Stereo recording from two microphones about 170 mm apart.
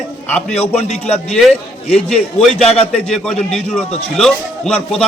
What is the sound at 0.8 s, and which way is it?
Speech, 40° left (ahead or behind).